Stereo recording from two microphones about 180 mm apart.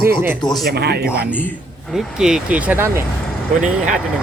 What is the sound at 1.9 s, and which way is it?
Speech, 5° right (ahead or behind).